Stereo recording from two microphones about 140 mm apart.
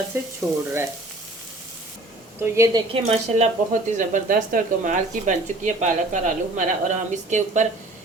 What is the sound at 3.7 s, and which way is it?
Speech, 65° right (ahead or behind).